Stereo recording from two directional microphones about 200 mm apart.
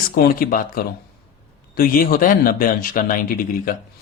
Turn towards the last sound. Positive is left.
turn(degrees=45)  # may be behind; listen again after turning